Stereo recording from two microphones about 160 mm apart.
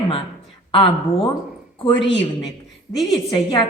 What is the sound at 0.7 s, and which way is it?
Speech, 35° left (ahead or behind).